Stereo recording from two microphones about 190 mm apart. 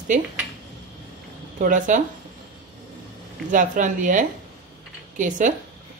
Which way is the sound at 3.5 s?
40° right (ahead or behind).